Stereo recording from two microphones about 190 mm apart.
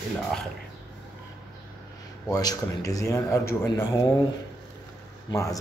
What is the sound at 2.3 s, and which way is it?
Speech, 20° left (ahead or behind).